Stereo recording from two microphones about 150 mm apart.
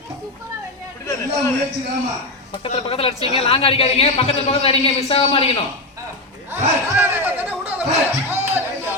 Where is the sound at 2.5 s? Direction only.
35° left (ahead or behind).